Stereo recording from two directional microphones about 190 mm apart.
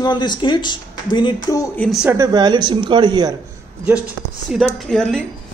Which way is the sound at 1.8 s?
5° right (ahead or behind).